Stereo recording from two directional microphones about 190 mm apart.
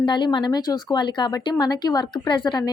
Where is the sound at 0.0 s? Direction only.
25° left (ahead or behind).